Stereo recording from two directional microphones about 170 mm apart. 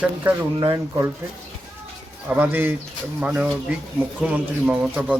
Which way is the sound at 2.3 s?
10° right (ahead or behind).